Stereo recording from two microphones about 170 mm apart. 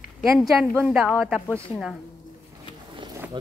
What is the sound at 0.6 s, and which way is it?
A woman's voice, 5° right (ahead or behind).